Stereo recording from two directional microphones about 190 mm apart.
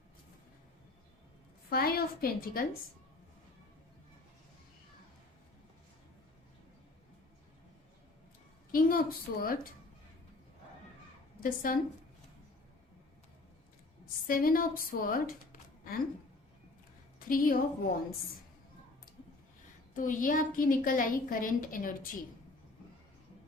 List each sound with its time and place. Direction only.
1.7 s a woman's voice: 50° left (ahead or behind)
8.7 s a woman's voice: 45° left (ahead or behind)
11.4 s a woman's voice: 45° left (ahead or behind)
14.3 s a woman's voice: 50° left (ahead or behind)
17.2 s a woman's voice: 50° left (ahead or behind)
20.0 s a woman's voice: 45° left (ahead or behind)